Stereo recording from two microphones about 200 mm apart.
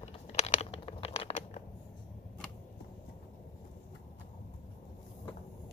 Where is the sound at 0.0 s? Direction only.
30° left (ahead or behind).